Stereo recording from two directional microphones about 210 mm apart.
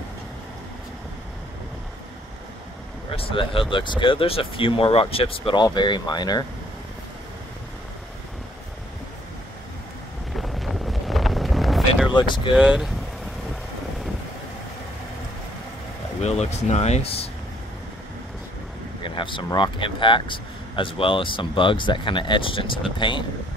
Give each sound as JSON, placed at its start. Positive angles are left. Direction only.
{"t": 3.1, "sound": "speech", "side_deg": 25}
{"t": 10.3, "sound": "wind noise", "side_deg": 0}
{"t": 12.1, "sound": "speech", "side_deg": 20}
{"t": 12.5, "sound": "speech", "side_deg": -5}
{"t": 16.2, "sound": "speech", "side_deg": 30}
{"t": 19.0, "sound": "speech", "side_deg": 25}